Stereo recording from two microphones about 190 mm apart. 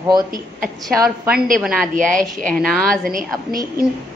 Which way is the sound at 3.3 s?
20° right (ahead or behind).